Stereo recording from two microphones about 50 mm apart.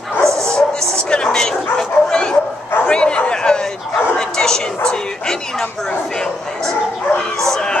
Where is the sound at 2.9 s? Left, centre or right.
Left.